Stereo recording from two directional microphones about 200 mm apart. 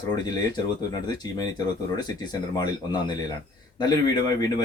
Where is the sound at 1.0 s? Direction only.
20° left (ahead or behind).